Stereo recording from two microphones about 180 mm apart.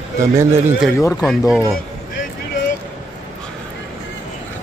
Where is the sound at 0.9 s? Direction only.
15° left (ahead or behind).